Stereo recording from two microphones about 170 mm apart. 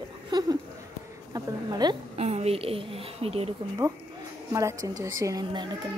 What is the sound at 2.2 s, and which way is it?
A woman's voice, 40° right (ahead or behind).